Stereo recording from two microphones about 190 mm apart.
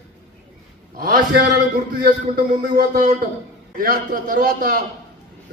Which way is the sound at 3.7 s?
50° right (ahead or behind).